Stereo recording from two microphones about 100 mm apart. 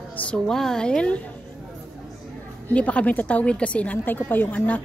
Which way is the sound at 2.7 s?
15° left (ahead or behind).